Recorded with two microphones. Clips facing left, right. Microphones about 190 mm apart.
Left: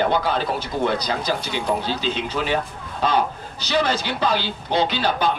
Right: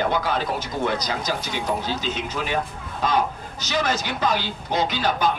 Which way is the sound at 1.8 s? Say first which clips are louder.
Left 2 dB; 30° left (ahead or behind).